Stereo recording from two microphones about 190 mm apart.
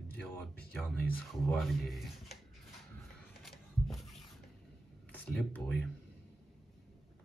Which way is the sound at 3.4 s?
Centre (ahead or behind).